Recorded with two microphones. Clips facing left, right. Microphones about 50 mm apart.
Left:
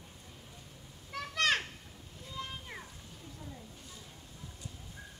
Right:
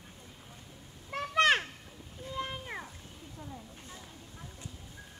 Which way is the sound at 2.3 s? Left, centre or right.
Right.